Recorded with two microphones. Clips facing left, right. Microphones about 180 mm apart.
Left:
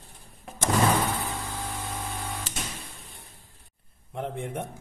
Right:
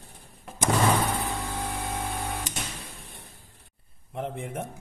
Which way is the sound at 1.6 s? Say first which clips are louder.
Right 3 dB; 55° right (ahead or behind).